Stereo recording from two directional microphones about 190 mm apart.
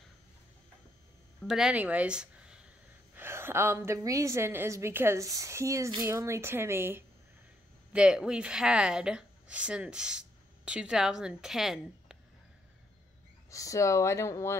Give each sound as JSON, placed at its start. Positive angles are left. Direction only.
{"t": 1.4, "sound": "a woman's voice", "side_deg": 0}
{"t": 13.5, "sound": "speech", "side_deg": 15}